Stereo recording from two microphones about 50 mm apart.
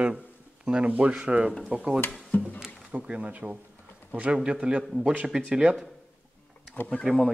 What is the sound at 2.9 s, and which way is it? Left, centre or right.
Speech, right.